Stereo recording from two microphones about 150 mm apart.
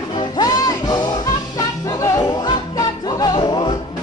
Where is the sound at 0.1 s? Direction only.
25° left (ahead or behind).